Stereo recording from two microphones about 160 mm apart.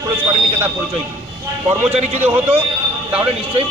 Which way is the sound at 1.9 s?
45° right (ahead or behind).